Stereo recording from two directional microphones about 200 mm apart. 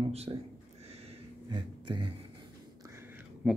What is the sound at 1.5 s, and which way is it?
Speech, 25° right (ahead or behind).